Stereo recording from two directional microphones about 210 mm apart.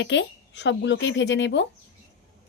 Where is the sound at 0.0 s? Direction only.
60° left (ahead or behind).